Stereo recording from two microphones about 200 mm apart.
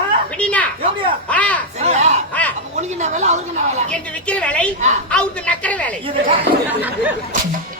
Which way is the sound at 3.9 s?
5° left (ahead or behind).